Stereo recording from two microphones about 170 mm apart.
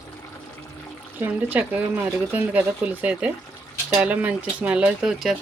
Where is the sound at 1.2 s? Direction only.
10° right (ahead or behind).